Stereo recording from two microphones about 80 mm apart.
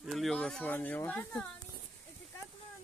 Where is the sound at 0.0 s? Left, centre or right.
Centre.